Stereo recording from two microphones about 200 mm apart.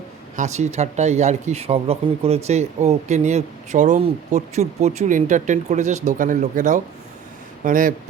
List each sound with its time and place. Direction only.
0.3 s speech: 35° right (ahead or behind)